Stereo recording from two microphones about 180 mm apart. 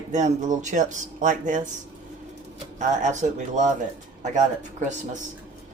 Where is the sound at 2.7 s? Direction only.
45° right (ahead or behind).